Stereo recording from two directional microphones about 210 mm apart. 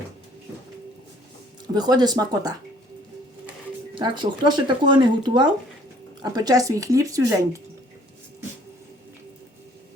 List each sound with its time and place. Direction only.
1.7 s speech: 20° right (ahead or behind)
3.9 s speech: 20° right (ahead or behind)